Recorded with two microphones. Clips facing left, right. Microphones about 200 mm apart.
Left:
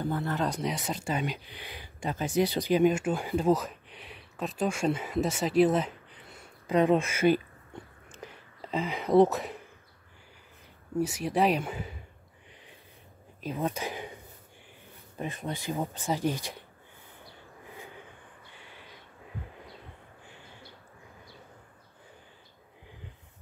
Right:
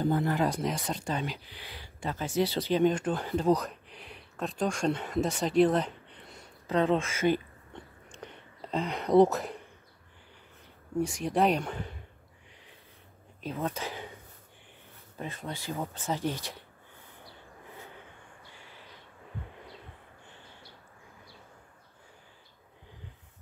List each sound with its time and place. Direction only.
0.0 s speech: 15° right (ahead or behind)
0.5 s speech: centre (ahead or behind)
8.1 s whispering: 5° left (ahead or behind)
11.0 s speech: 5° left (ahead or behind)
13.4 s speech: 15° left (ahead or behind)
15.1 s speech: 15° left (ahead or behind)